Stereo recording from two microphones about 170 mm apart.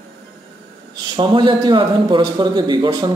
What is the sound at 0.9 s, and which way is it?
A woman's voice, 25° right (ahead or behind).